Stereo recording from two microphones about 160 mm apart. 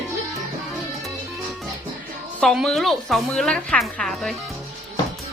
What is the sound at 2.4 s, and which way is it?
A woman's voice, centre (ahead or behind).